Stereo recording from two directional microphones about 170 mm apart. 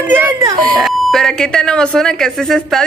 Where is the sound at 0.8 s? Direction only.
Centre (ahead or behind).